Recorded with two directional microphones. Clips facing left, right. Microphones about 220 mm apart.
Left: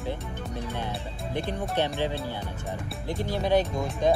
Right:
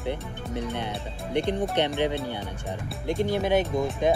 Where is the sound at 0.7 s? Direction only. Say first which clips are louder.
Right 1 dB; 20° right (ahead or behind).